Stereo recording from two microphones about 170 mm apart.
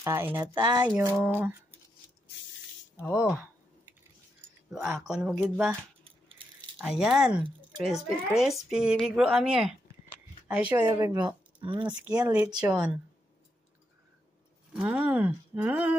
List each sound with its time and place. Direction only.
0.0 s speech: 15° right (ahead or behind)
0.4 s speech: 25° right (ahead or behind)
0.9 s speech: 15° right (ahead or behind)
3.0 s speech: 10° left (ahead or behind)
4.6 s a woman's voice: centre (ahead or behind)
6.8 s a woman's voice: 5° right (ahead or behind)
10.1 s a sound: 10° right (ahead or behind)
10.9 s speech: 10° right (ahead or behind)
11.6 s speech: 25° right (ahead or behind)
12.6 s speech: 5° right (ahead or behind)
14.7 s speech: 10° right (ahead or behind)